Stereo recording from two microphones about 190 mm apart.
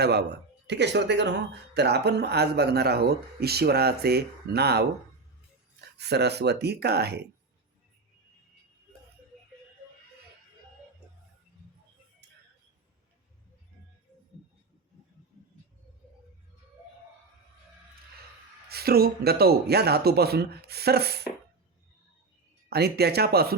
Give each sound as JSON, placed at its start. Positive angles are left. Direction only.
{"t": 0.0, "sound": "speech", "side_deg": -60}
{"t": 6.0, "sound": "speech", "side_deg": -60}
{"t": 18.7, "sound": "speech", "side_deg": -55}
{"t": 22.7, "sound": "speech", "side_deg": -55}